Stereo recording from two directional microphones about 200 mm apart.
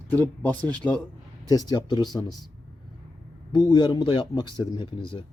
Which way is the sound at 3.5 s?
20° left (ahead or behind).